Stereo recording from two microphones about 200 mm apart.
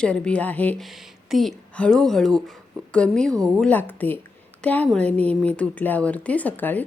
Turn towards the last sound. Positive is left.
turn(degrees=10)  # may be behind; listen again after turning